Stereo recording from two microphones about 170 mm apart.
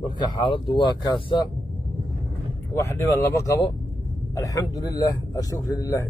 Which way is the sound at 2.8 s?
20° left (ahead or behind).